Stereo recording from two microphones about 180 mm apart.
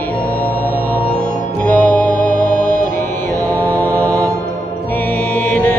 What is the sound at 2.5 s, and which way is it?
Music, 45° left (ahead or behind).